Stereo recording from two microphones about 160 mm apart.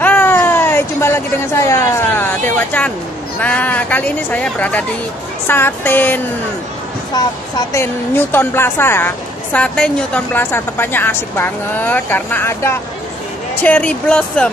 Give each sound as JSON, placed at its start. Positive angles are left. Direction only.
{"t": 0.0, "sound": "a sound", "side_deg": 10}
{"t": 3.3, "sound": "a woman's voice", "side_deg": 10}
{"t": 7.2, "sound": "speech", "side_deg": 25}
{"t": 7.7, "sound": "a woman's voice", "side_deg": 15}